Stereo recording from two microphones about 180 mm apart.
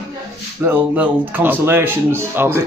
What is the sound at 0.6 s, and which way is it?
A man's voice, 10° right (ahead or behind).